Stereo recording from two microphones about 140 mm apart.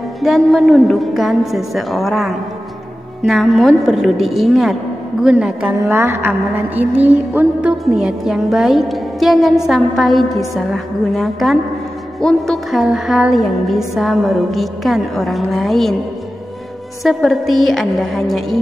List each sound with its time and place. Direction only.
0.2 s a woman's voice: centre (ahead or behind)
5.9 s a woman's voice: 20° right (ahead or behind); by 16.0 s centre (ahead or behind)
17.0 s a woman's voice: centre (ahead or behind)